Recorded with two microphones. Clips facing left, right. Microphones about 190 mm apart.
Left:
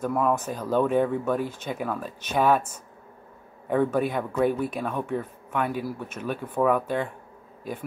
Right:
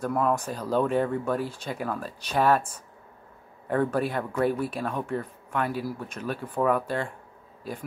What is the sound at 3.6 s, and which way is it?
Speech, 10° left (ahead or behind).